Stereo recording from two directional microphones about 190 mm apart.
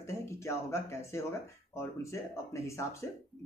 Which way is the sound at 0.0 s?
15° left (ahead or behind).